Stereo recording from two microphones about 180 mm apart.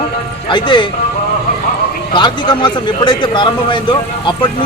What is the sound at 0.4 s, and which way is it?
Speech, 25° left (ahead or behind).